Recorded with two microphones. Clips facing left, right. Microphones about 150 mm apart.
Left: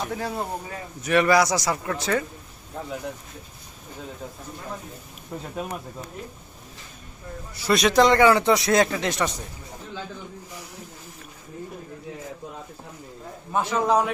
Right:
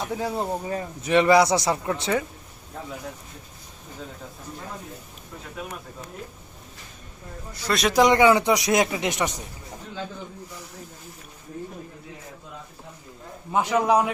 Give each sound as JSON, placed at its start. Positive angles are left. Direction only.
{"t": 0.1, "sound": "speech", "side_deg": -20}
{"t": 7.5, "sound": "speech", "side_deg": 5}
{"t": 13.5, "sound": "speech", "side_deg": -15}